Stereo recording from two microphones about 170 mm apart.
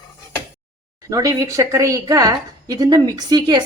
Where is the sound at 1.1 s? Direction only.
20° right (ahead or behind).